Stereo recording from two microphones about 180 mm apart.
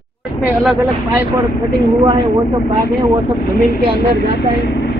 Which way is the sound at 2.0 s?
20° right (ahead or behind).